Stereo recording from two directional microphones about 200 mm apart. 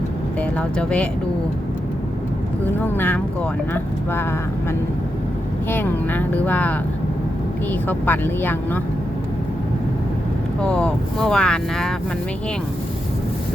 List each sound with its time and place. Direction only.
0.8 s speech: 5° left (ahead or behind)
2.8 s speech: 10° left (ahead or behind)
5.7 s speech: 10° left (ahead or behind)
10.6 s speech: 5° left (ahead or behind)